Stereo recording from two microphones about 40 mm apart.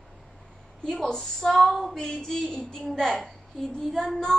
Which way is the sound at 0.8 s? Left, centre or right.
Centre.